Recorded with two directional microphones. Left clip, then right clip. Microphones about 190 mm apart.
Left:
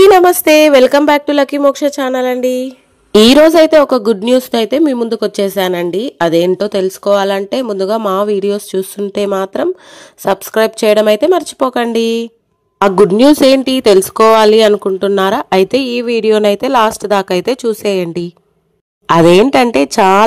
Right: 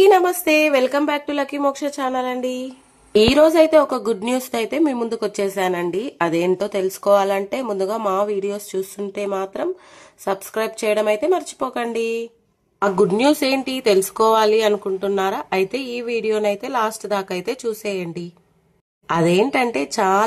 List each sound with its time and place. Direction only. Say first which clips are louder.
0.0 s a woman's voice: left 8 dB; 45° left (ahead or behind)